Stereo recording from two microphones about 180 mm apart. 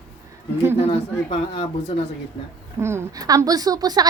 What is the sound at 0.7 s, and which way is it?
Speech, 35° left (ahead or behind).